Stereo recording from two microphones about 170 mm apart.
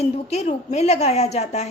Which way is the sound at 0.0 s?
40° left (ahead or behind).